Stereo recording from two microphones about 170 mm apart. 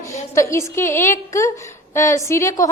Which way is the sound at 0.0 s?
15° left (ahead or behind).